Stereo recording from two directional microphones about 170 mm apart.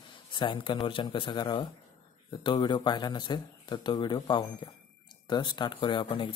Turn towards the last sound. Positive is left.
turn(degrees=30)  # may be behind; listen again after turning